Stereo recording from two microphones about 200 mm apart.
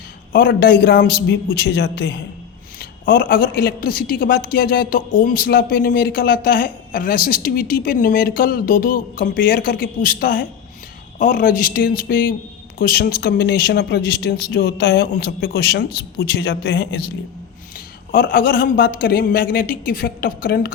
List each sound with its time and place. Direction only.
0.3 s a man's voice: 50° left (ahead or behind)